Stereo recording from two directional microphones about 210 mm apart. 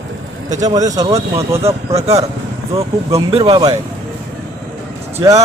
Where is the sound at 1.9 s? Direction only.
30° right (ahead or behind).